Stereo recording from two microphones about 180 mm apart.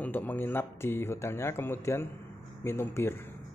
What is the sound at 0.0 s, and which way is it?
Speech, 10° left (ahead or behind).